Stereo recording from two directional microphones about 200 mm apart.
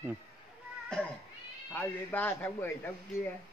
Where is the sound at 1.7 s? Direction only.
10° left (ahead or behind).